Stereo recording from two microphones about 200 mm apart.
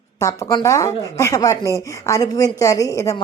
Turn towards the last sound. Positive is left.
turn(degrees=15)  # may be behind; listen again after turning